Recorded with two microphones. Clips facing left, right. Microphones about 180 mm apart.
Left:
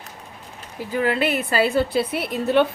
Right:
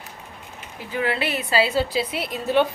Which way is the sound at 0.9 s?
45° left (ahead or behind).